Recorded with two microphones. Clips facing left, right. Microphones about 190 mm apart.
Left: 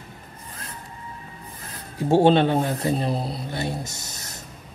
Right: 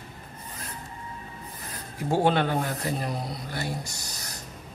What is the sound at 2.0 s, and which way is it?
Speech, 25° left (ahead or behind).